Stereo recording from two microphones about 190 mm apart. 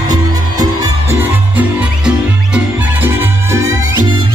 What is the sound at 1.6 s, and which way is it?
Music, 5° right (ahead or behind).